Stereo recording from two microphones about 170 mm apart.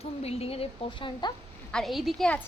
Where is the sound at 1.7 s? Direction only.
Centre (ahead or behind).